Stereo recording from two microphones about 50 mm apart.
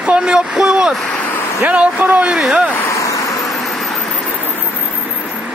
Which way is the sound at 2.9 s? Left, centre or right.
Left.